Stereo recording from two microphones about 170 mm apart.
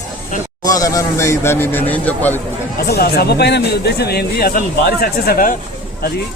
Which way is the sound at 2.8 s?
65° left (ahead or behind).